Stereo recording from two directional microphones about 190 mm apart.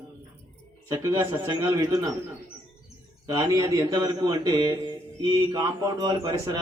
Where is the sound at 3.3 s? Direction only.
20° right (ahead or behind).